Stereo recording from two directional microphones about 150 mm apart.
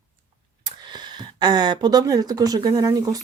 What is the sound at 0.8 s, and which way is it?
Speech, 30° right (ahead or behind).